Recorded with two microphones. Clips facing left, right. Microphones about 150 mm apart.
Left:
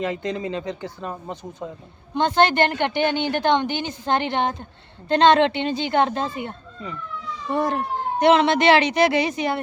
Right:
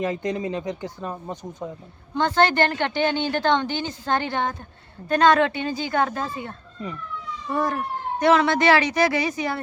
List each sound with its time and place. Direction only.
0.0 s speech: 15° right (ahead or behind)
2.1 s a woman's voice: 20° left (ahead or behind)